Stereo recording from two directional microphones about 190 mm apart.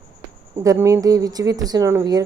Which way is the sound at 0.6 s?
15° right (ahead or behind).